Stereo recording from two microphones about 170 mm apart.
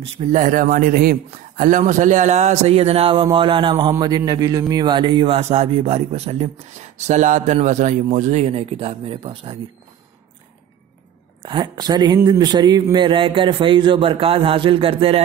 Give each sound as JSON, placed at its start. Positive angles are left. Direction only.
{"t": 0.2, "sound": "a man's voice", "side_deg": -50}
{"t": 11.4, "sound": "speech", "side_deg": -25}